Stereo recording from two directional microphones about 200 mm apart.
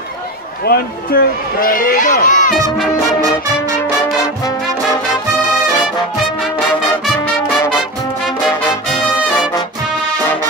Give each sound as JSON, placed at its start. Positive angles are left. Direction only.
{"t": 0.7, "sound": "speech", "side_deg": 50}